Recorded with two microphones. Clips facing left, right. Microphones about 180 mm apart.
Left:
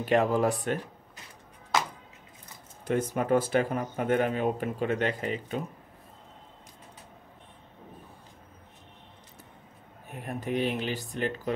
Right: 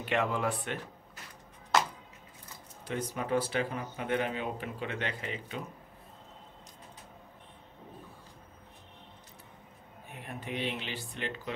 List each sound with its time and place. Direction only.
0.0 s speech: 40° left (ahead or behind)
2.8 s speech: 50° left (ahead or behind)
10.1 s speech: 45° left (ahead or behind)